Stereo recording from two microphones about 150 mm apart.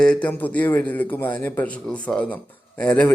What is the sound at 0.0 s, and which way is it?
A man's voice, 5° left (ahead or behind).